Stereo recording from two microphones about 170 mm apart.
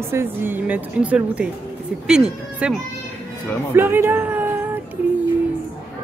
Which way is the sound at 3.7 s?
15° right (ahead or behind).